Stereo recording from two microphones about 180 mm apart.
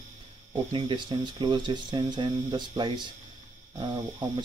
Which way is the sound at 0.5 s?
25° right (ahead or behind).